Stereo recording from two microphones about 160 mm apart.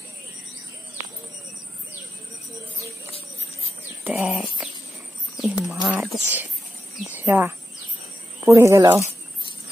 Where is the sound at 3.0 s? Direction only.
40° left (ahead or behind).